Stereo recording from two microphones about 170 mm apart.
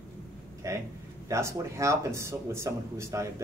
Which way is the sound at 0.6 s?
20° right (ahead or behind).